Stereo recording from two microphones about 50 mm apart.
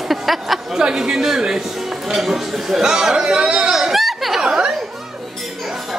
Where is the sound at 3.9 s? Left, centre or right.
Centre.